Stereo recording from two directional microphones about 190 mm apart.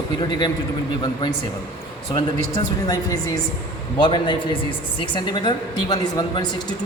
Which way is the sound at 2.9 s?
20° left (ahead or behind).